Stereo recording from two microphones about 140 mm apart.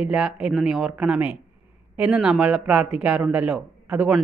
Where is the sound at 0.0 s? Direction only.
5° right (ahead or behind).